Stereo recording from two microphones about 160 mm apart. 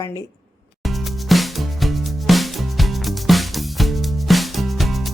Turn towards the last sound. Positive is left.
turn(degrees=0)  # may be behind; listen again after turning